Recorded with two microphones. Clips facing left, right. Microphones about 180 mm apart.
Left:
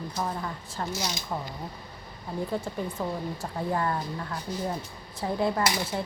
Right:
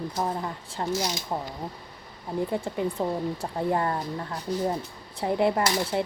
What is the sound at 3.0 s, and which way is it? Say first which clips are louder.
Speech: right 4 dB; 30° right (ahead or behind).